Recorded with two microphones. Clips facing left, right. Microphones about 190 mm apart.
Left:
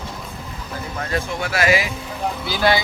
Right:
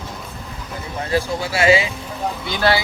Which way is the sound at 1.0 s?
30° right (ahead or behind).